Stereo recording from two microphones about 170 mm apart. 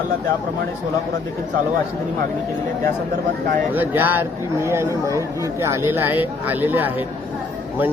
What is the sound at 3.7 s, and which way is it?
Speech, 10° right (ahead or behind).